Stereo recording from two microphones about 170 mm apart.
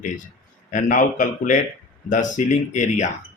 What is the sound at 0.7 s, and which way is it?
Speech, 50° left (ahead or behind).